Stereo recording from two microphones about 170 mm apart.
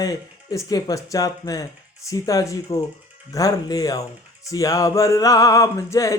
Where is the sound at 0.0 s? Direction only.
20° left (ahead or behind).